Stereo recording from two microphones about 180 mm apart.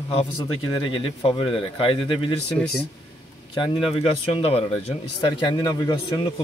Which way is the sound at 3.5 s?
25° left (ahead or behind).